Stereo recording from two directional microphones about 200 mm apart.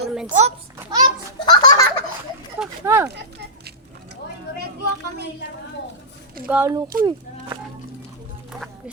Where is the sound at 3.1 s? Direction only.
55° right (ahead or behind).